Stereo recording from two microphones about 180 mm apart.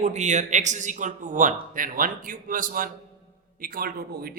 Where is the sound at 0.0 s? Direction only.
40° right (ahead or behind).